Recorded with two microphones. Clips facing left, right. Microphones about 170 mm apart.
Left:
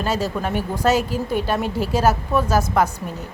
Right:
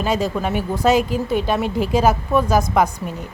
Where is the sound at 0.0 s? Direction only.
10° right (ahead or behind).